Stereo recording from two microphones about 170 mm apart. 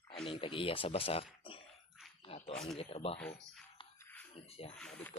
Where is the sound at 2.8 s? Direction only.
35° left (ahead or behind).